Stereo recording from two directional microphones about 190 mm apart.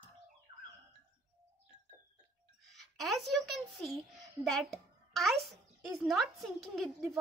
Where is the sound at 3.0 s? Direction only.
Centre (ahead or behind).